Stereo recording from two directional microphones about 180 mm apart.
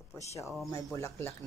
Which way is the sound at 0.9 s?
15° left (ahead or behind).